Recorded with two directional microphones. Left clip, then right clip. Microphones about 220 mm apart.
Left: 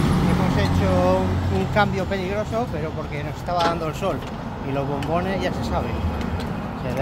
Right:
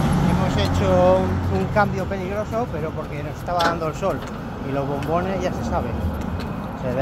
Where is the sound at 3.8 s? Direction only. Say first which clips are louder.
Right 1 dB; centre (ahead or behind).